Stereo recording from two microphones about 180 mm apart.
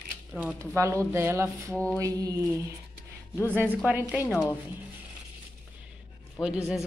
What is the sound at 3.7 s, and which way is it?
Speech, 10° right (ahead or behind).